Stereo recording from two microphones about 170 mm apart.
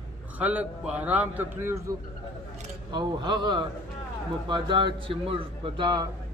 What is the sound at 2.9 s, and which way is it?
A man's voice, 25° right (ahead or behind).